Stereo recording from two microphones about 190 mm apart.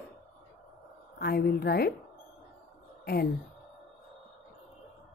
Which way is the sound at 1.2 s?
55° left (ahead or behind).